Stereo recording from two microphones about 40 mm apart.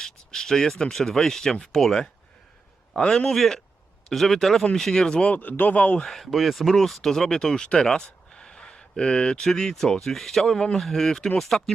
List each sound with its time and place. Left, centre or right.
0.0 s speech: centre
4.6 s speech: centre
5.4 s speech: left
6.1 s speech: centre
8.0 s a sound: centre
9.4 s speech: centre